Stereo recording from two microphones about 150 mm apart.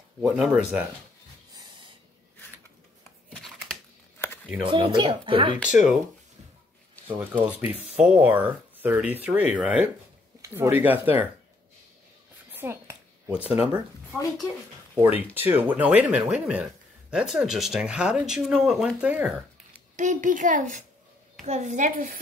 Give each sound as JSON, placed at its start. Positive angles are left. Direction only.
{"t": 0.2, "sound": "speech", "side_deg": -5}
{"t": 1.5, "sound": "snort", "side_deg": -30}
{"t": 4.2, "sound": "a sound", "side_deg": 15}
{"t": 4.6, "sound": "speech", "side_deg": -35}
{"t": 7.1, "sound": "speech", "side_deg": -10}
{"t": 12.5, "sound": "a sound", "side_deg": -15}
{"t": 15.0, "sound": "speech", "side_deg": -15}
{"t": 20.0, "sound": "a woman's voice", "side_deg": -55}